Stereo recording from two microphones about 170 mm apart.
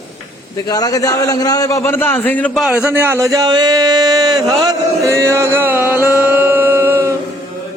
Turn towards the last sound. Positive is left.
turn(degrees=-15)  # may be behind; listen again after turning